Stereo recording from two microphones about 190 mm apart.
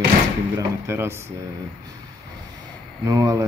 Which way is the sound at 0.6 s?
15° right (ahead or behind).